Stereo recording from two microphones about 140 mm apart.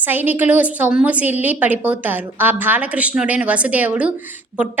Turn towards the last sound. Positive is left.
turn(degrees=-10)  # may be behind; listen again after turning